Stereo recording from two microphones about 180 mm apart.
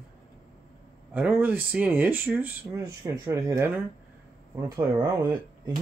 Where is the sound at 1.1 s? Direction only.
10° right (ahead or behind).